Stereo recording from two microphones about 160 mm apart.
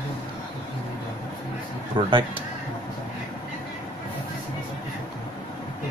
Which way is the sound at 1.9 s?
30° right (ahead or behind).